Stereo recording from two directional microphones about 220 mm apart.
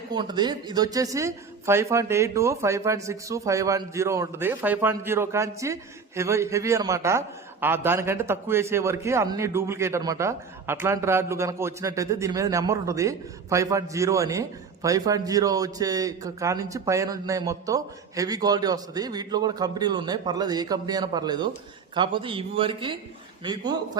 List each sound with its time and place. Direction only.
0.1 s speech: 20° right (ahead or behind)